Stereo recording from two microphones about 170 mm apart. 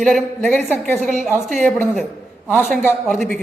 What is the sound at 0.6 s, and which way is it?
Speech, 40° right (ahead or behind).